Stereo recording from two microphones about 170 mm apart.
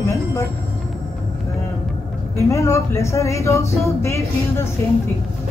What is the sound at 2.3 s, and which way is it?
A woman's voice, 15° left (ahead or behind).